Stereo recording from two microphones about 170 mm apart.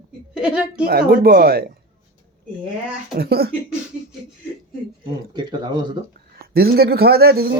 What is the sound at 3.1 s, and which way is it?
Speech, 65° right (ahead or behind).